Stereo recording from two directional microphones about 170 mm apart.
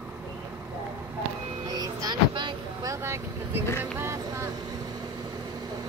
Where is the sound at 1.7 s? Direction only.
20° right (ahead or behind).